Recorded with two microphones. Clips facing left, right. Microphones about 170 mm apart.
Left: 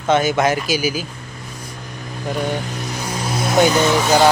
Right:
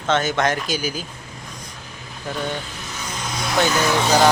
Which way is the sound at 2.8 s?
35° left (ahead or behind).